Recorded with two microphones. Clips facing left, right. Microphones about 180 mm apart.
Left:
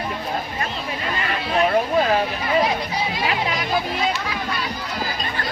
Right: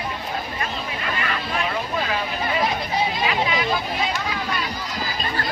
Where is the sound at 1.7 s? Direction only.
45° left (ahead or behind).